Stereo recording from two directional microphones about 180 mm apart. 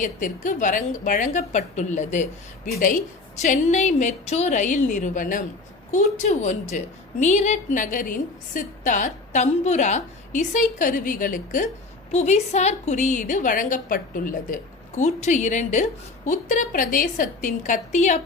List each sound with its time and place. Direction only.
0.0 s a woman's voice: 45° left (ahead or behind)